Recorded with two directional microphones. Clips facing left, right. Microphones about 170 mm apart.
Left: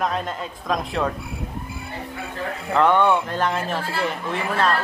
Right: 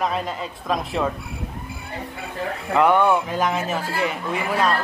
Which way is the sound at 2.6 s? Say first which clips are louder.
Even; 5° right (ahead or behind).